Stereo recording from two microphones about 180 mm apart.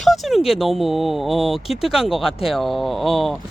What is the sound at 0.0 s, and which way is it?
Speech, centre (ahead or behind).